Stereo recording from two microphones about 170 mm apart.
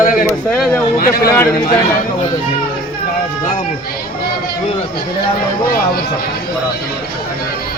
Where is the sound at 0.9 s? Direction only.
60° left (ahead or behind).